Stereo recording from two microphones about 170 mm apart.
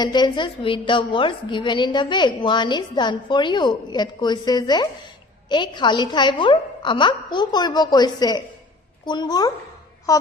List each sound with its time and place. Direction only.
0.0 s a woman's voice: 25° left (ahead or behind)